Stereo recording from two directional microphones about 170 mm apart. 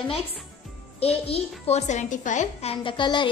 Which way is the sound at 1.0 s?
35° left (ahead or behind).